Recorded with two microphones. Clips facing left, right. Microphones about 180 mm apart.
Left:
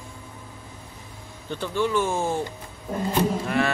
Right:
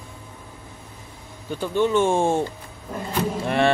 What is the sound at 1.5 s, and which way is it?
Speech, 15° right (ahead or behind).